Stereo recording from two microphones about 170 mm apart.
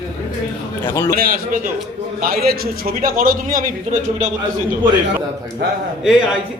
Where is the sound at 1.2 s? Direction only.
55° right (ahead or behind).